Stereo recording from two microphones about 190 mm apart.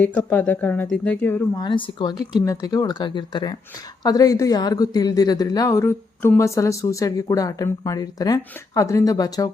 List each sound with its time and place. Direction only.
0.0 s speech: 10° left (ahead or behind)
1.5 s a woman's voice: 25° left (ahead or behind)